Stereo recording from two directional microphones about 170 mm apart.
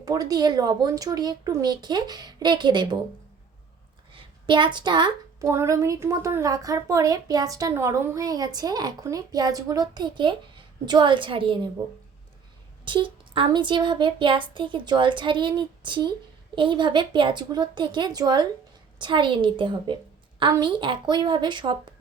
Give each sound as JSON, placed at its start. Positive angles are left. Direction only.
{"t": 0.0, "sound": "a woman's voice", "side_deg": -20}
{"t": 4.1, "sound": "a woman's voice", "side_deg": -30}
{"t": 12.8, "sound": "a woman's voice", "side_deg": -30}